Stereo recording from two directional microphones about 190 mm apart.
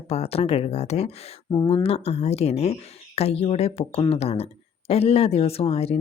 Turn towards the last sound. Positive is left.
turn(degrees=30)  # may be behind; listen again after turning